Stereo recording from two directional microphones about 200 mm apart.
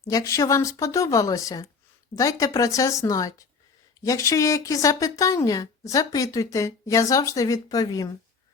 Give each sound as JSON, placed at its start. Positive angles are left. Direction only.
{"t": 0.1, "sound": "speech", "side_deg": 15}